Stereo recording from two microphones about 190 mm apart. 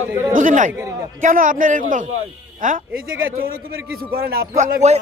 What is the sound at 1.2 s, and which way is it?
A man's voice, 45° right (ahead or behind).